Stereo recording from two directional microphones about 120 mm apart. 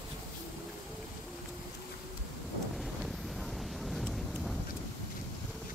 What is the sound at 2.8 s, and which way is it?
Wind noise, centre (ahead or behind).